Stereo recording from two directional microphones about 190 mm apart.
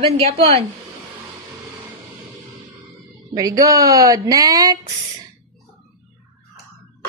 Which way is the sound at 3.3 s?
15° right (ahead or behind).